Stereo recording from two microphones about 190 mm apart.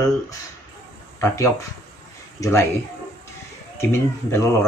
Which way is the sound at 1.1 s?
15° left (ahead or behind).